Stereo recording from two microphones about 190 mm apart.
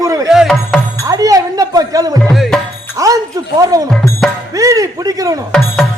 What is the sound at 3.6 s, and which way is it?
Speech, 20° right (ahead or behind).